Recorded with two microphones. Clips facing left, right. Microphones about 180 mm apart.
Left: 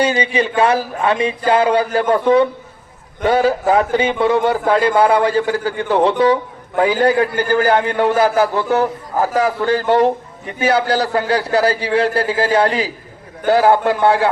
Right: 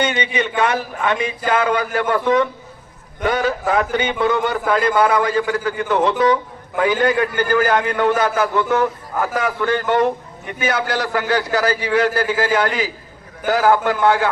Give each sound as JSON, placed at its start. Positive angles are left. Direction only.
{"t": 0.0, "sound": "a man's voice", "side_deg": 35}